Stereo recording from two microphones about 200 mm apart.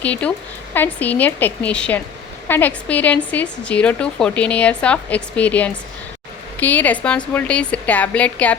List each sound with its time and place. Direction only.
0.0 s a woman's voice: 5° left (ahead or behind)